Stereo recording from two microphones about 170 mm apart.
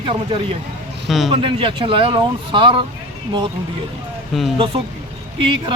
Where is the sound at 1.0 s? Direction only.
Centre (ahead or behind).